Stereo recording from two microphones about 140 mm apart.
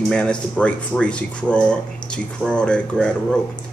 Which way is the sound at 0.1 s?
5° left (ahead or behind).